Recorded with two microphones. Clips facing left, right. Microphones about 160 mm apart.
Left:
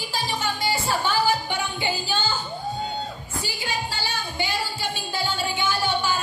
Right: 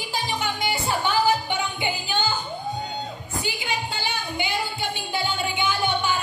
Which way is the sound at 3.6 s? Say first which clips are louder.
Right 1 dB; 20° right (ahead or behind).